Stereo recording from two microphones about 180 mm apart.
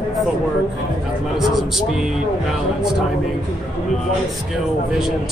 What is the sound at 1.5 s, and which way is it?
Speech, centre (ahead or behind).